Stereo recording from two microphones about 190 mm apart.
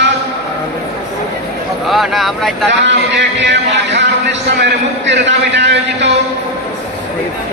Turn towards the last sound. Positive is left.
turn(degrees=-70)  # may be behind; listen again after turning